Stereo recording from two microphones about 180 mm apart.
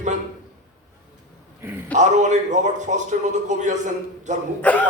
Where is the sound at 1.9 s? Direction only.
40° right (ahead or behind).